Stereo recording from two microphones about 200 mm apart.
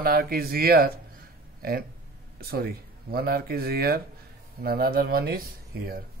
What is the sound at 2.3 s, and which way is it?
Speech, 50° right (ahead or behind).